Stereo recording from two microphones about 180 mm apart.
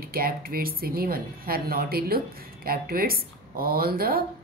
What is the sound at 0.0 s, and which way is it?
Speech, 55° right (ahead or behind).